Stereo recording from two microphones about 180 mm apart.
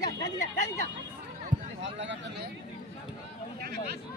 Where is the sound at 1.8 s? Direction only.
90° right.